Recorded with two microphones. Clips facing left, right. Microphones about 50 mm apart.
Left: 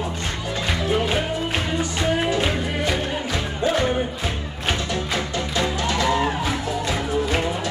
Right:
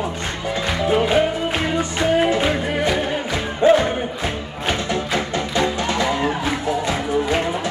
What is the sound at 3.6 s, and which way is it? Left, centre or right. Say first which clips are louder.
Music: right 9 dB; right.